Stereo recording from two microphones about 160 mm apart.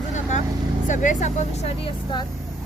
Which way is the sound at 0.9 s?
50° left (ahead or behind).